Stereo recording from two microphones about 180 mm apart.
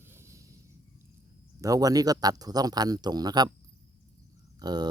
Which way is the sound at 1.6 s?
20° right (ahead or behind).